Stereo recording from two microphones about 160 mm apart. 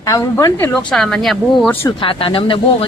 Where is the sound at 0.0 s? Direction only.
20° left (ahead or behind).